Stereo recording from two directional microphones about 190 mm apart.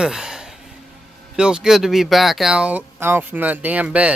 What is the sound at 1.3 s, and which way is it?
Speech, 5° right (ahead or behind).